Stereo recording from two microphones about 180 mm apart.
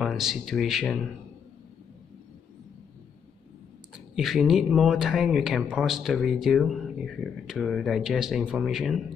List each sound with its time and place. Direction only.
0.0 s speech: centre (ahead or behind)
4.1 s speech: centre (ahead or behind)